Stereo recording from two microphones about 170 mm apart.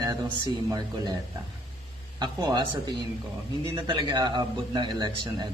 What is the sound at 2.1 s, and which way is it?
A man's voice, 25° right (ahead or behind).